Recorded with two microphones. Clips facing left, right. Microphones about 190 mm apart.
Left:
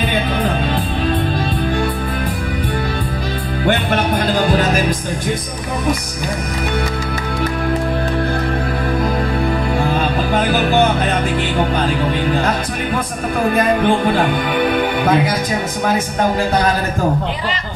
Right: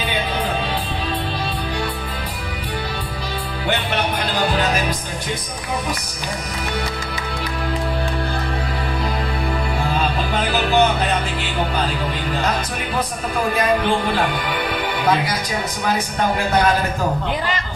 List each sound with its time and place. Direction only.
4.5 s music: 45° left (ahead or behind)
10.3 s music: 45° left (ahead or behind)
13.6 s music: 50° left (ahead or behind)